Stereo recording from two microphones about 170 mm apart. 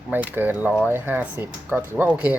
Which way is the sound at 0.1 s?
10° right (ahead or behind).